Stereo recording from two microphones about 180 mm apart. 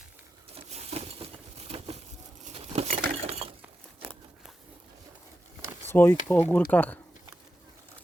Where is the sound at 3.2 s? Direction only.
35° right (ahead or behind).